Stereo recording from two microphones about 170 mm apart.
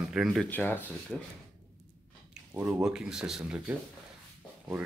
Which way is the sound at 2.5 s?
5° right (ahead or behind).